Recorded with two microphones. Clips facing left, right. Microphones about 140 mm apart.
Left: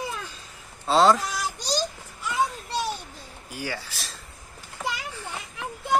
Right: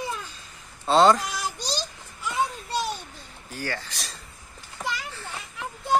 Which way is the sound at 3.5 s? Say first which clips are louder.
Right 1 dB; 10° left (ahead or behind).